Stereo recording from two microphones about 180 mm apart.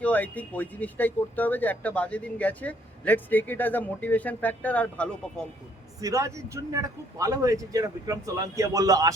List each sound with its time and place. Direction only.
0.0 s speech: 10° left (ahead or behind)
6.0 s a man's voice: 20° right (ahead or behind)